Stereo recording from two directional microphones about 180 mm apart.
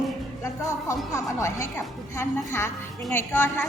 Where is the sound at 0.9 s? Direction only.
15° left (ahead or behind).